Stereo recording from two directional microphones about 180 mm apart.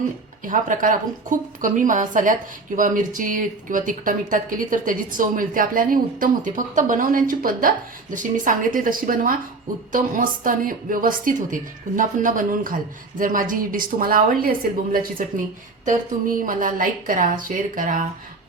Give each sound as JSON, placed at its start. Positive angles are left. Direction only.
{"t": 0.4, "sound": "speech", "side_deg": -45}